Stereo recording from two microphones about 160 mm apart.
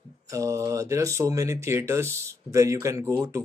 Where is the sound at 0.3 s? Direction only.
20° right (ahead or behind).